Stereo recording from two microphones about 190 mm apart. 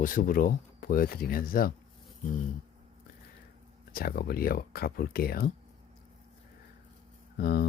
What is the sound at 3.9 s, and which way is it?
Speech, 50° left (ahead or behind).